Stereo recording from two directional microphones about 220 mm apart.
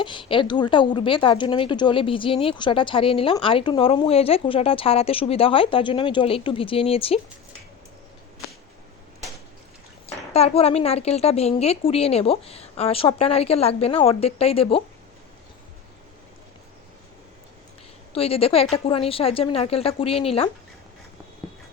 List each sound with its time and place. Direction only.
0.0 s a woman's voice: 20° left (ahead or behind)
10.1 s a woman's voice: 30° left (ahead or behind)
18.1 s a woman's voice: 25° left (ahead or behind)